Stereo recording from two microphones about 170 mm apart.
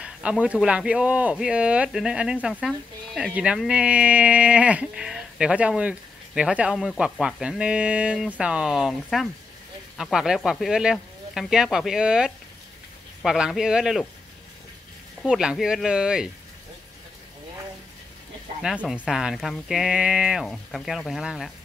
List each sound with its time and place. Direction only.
0.0 s speech: 5° right (ahead or behind)
15.2 s speech: 5° right (ahead or behind)
18.6 s speech: 5° right (ahead or behind)